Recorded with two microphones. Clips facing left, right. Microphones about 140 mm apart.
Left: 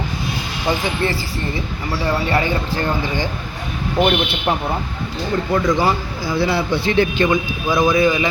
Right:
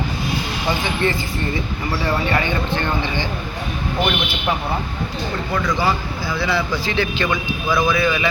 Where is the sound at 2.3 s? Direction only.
35° left (ahead or behind).